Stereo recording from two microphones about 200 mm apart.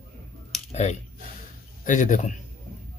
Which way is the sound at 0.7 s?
35° left (ahead or behind).